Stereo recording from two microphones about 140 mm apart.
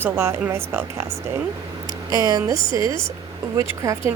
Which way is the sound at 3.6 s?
20° right (ahead or behind).